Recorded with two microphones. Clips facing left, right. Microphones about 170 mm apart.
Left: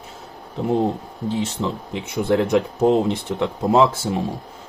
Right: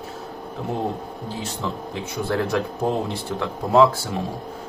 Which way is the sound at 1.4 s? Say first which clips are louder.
Left 3 dB; 20° left (ahead or behind).